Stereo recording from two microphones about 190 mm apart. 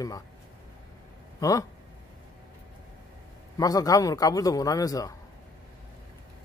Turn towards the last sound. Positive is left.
turn(degrees=20)  # may be behind; listen again after turning